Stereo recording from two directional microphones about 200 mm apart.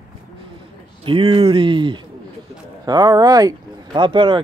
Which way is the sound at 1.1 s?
25° right (ahead or behind).